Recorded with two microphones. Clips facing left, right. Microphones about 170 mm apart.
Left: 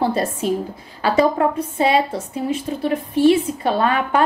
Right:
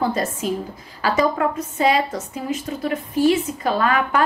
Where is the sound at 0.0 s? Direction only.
30° left (ahead or behind).